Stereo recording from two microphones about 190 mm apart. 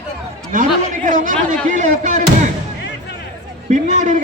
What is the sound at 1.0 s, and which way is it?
A man's voice, 45° right (ahead or behind).